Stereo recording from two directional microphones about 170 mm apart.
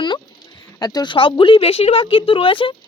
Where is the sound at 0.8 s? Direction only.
25° left (ahead or behind).